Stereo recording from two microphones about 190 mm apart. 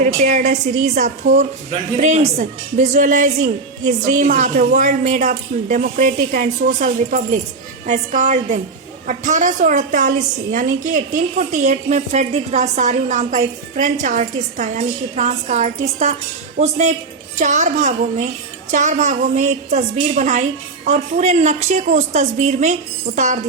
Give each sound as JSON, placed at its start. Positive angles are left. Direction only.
{"t": 0.0, "sound": "a woman's voice", "side_deg": -40}